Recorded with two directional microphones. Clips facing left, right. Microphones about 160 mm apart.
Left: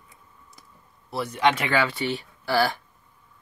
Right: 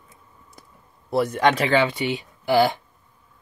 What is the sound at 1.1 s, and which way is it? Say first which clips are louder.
Speech: right 4 dB; 50° right (ahead or behind).